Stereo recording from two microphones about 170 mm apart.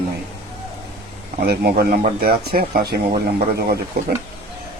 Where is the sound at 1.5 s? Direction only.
65° right (ahead or behind).